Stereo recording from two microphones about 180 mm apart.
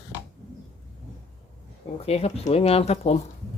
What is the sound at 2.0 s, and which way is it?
Speech, 35° left (ahead or behind).